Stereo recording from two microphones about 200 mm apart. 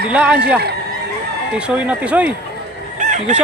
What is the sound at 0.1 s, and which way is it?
Speech, 5° right (ahead or behind).